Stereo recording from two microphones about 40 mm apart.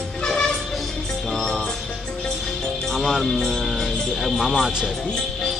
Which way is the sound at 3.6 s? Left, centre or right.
Centre.